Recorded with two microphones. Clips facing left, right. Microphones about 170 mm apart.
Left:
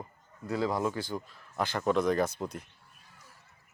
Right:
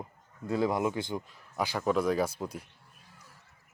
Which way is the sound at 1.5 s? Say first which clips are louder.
Even; 10° right (ahead or behind).